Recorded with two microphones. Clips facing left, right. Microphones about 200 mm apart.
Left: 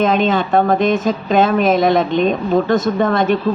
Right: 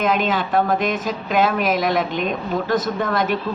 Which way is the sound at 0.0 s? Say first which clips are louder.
Left 5 dB; 25° left (ahead or behind).